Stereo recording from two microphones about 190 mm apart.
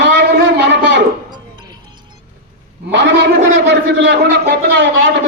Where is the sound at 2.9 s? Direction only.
65° right (ahead or behind).